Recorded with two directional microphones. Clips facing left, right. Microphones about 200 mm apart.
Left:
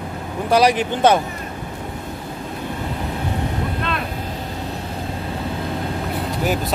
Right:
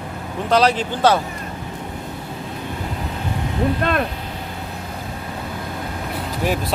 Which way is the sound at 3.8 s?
50° right (ahead or behind).